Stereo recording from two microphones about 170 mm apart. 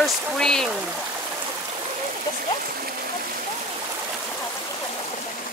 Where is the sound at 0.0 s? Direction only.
5° left (ahead or behind).